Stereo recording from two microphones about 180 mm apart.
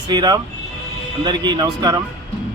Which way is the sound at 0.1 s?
25° right (ahead or behind).